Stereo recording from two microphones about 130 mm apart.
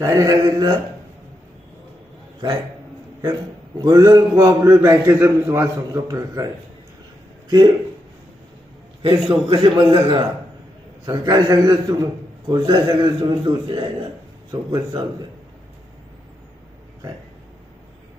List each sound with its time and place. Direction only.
0.0 s a man's voice: 25° right (ahead or behind)
3.8 s a man's voice: 30° right (ahead or behind)
9.0 s a man's voice: 40° right (ahead or behind)